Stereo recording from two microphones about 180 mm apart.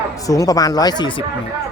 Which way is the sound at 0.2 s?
20° left (ahead or behind).